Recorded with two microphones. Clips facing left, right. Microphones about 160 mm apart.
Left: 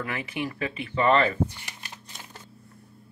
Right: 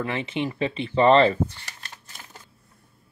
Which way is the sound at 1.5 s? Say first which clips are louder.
Left 1 dB; 15° left (ahead or behind).